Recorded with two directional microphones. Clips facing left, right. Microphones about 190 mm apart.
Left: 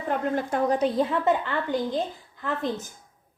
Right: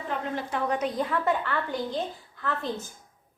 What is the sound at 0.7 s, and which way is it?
A woman's voice, 30° left (ahead or behind).